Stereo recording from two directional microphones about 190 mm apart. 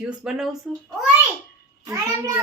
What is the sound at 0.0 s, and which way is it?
Speech, 5° right (ahead or behind).